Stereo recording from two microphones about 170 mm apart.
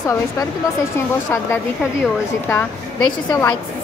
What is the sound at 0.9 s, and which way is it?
A woman's voice, 15° left (ahead or behind).